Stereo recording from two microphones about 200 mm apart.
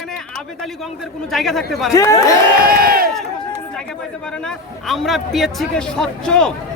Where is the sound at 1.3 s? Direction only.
Centre (ahead or behind).